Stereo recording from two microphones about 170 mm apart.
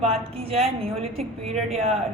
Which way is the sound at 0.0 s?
35° right (ahead or behind).